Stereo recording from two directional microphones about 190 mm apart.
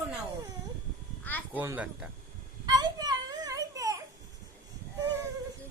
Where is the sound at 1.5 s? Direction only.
10° right (ahead or behind).